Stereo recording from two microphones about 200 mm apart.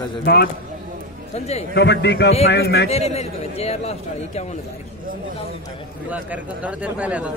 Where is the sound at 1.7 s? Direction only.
55° left (ahead or behind).